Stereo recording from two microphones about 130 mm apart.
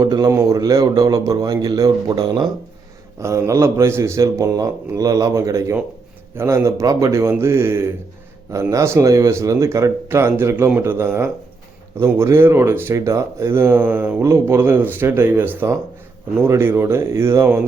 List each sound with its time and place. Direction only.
0.0 s a man's voice: 30° right (ahead or behind)